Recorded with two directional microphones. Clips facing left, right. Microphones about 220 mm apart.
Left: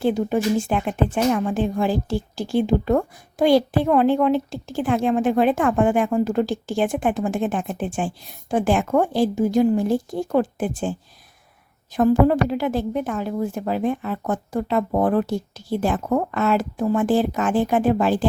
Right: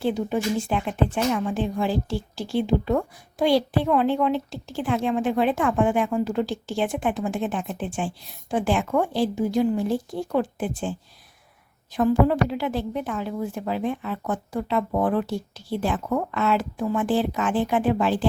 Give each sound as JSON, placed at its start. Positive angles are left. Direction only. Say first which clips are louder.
{"t": 0.0, "sound": "speech", "louder": "left 4 dB", "side_deg": 50}
{"t": 11.9, "sound": "speech", "louder": "left 3 dB", "side_deg": 45}